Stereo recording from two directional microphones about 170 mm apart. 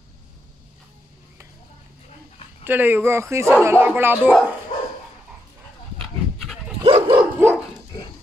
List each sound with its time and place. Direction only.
2.6 s speech: 10° right (ahead or behind)
5.9 s goat: centre (ahead or behind)
6.8 s dog: 35° right (ahead or behind)
7.2 s dog: 10° right (ahead or behind)